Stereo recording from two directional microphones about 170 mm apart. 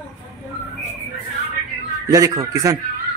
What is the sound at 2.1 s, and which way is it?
Speech, 20° right (ahead or behind).